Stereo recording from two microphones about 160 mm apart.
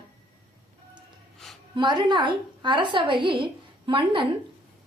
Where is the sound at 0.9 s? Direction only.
Centre (ahead or behind).